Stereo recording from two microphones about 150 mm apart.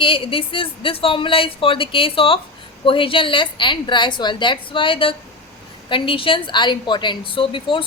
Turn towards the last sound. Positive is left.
turn(degrees=35)  # may be behind; listen again after turning